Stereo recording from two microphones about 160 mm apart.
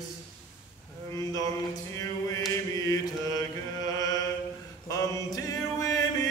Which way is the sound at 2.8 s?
25° left (ahead or behind).